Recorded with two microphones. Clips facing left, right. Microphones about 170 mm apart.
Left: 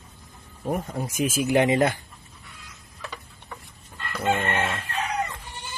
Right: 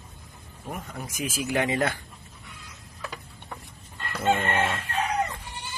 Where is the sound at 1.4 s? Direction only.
20° left (ahead or behind).